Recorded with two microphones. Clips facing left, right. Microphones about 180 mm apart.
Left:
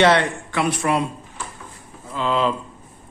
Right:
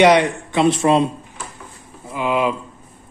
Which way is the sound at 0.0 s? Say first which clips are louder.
Right 4 dB; 15° right (ahead or behind).